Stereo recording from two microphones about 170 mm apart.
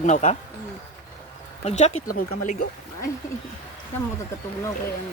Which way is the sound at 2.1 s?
55° left (ahead or behind).